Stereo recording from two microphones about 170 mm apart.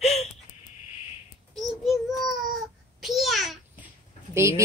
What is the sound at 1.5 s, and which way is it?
Child singing, centre (ahead or behind).